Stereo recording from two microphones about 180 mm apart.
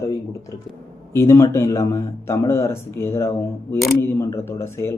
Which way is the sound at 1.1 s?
15° left (ahead or behind).